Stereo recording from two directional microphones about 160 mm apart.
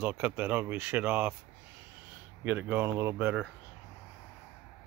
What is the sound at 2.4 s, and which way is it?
Speech, 15° right (ahead or behind).